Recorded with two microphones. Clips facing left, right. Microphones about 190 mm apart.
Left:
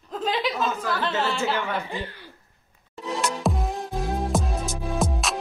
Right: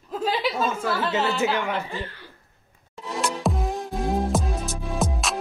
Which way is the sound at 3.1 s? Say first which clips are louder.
Right 1 dB; centre (ahead or behind).